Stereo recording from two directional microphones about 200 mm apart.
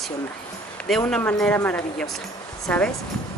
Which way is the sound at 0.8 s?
5° left (ahead or behind).